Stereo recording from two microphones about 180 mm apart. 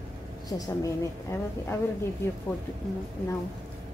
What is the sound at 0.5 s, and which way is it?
A woman's voice, 15° left (ahead or behind).